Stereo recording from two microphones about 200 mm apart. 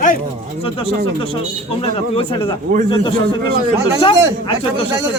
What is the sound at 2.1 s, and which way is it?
Speech, 25° left (ahead or behind).